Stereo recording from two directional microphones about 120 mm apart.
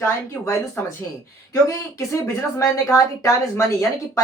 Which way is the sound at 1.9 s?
20° left (ahead or behind).